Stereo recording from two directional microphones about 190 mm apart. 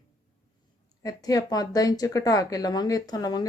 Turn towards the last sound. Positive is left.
turn(degrees=20)  # may be behind; listen again after turning